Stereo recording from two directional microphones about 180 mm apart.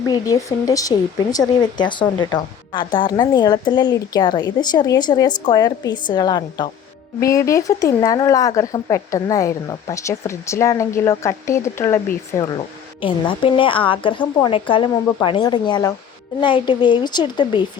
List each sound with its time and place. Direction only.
0.1 s speech: 20° left (ahead or behind)